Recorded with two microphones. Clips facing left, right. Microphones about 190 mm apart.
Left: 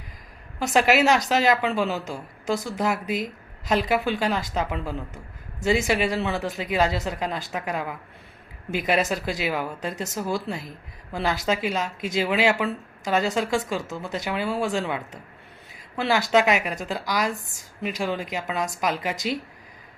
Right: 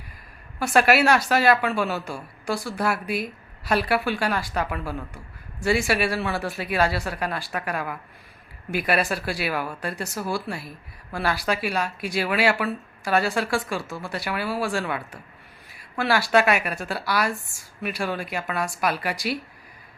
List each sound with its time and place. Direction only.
0.6 s a woman's voice: 20° left (ahead or behind)